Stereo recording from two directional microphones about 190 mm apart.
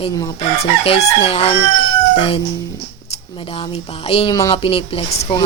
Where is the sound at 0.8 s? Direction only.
30° left (ahead or behind).